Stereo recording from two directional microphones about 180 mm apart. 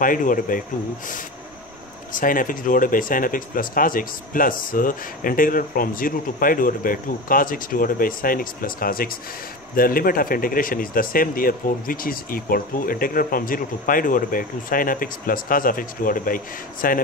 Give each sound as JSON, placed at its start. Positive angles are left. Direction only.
{"t": 0.0, "sound": "speech", "side_deg": 50}